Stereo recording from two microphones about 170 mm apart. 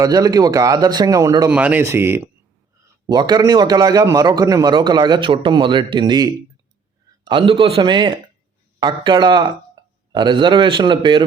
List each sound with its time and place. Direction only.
0.0 s a man's voice: 20° right (ahead or behind)
1.5 s speech: 10° right (ahead or behind)
2.8 s a man's voice: 25° right (ahead or behind)